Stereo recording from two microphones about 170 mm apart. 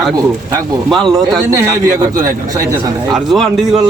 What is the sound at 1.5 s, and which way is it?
A man's voice, 20° right (ahead or behind).